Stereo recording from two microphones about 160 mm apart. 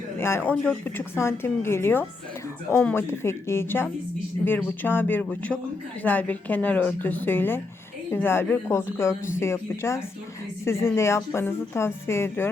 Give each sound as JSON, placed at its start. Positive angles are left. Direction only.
{"t": 0.2, "sound": "speech", "side_deg": 15}